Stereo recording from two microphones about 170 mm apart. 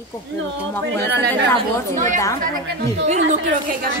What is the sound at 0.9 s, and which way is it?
Speech, 85° right.